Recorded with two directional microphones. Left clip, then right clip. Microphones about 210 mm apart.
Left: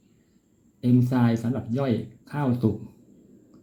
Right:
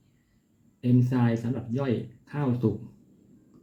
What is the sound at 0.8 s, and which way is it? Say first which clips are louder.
Speech: left 3 dB; 25° left (ahead or behind).